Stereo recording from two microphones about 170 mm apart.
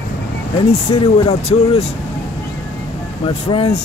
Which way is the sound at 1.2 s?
35° left (ahead or behind).